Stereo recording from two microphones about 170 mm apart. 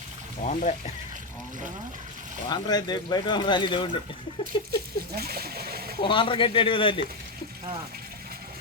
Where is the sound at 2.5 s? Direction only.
25° left (ahead or behind).